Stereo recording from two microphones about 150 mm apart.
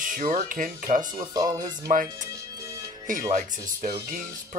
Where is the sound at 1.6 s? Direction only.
65° right (ahead or behind).